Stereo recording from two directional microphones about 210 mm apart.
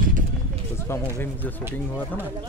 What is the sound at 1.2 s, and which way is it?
Speech, 10° left (ahead or behind).